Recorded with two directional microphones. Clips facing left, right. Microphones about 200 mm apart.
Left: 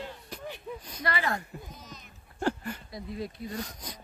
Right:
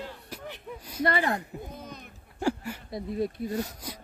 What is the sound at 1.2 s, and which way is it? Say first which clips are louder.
Speech: right 3 dB; 20° right (ahead or behind).